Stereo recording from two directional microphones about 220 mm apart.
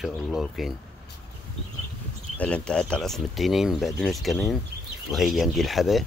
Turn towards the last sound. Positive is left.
turn(degrees=0)  # may be behind; listen again after turning